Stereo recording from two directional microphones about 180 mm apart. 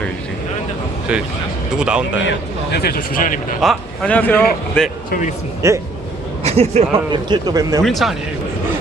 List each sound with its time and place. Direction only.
1.1 s speech: 5° right (ahead or behind)
2.7 s speech: 55° left (ahead or behind)
3.6 s a man's voice: 5° left (ahead or behind)
5.6 s speech: 15° right (ahead or behind)
6.4 s a man's voice: 35° right (ahead or behind)
7.1 s a man's voice: 25° right (ahead or behind)
7.9 s speech: centre (ahead or behind)